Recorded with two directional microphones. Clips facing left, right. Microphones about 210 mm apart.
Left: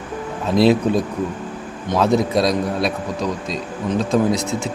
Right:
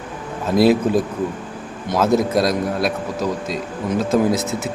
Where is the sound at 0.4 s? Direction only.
Centre (ahead or behind).